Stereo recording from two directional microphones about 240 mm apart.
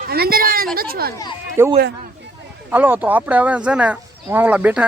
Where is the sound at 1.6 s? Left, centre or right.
Centre.